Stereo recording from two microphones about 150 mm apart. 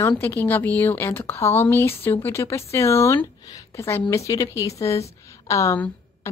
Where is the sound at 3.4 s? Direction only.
25° left (ahead or behind).